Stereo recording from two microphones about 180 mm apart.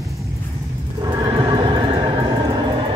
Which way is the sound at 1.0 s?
20° right (ahead or behind).